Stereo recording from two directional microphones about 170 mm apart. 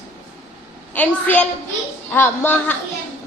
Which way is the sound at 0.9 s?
10° left (ahead or behind).